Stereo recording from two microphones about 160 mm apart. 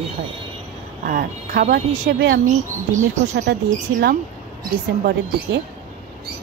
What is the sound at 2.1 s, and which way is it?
Speech, 85° right.